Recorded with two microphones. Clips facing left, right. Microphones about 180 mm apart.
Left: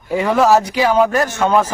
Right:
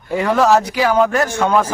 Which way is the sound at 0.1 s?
Centre (ahead or behind).